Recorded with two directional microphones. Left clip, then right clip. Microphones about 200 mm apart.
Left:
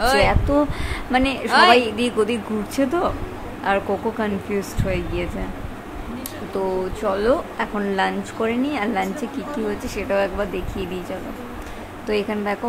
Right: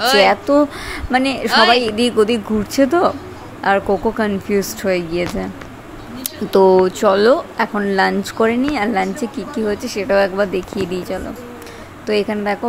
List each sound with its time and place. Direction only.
0.2 s speech: 25° right (ahead or behind)
6.5 s speech: 40° right (ahead or behind)
12.1 s speech: 20° right (ahead or behind)